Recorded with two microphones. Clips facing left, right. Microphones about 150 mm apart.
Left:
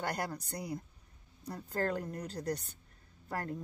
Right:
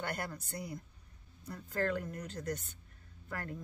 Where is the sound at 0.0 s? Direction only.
40° left (ahead or behind).